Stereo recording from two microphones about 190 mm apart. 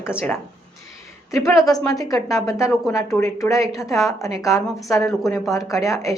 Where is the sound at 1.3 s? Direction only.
15° left (ahead or behind).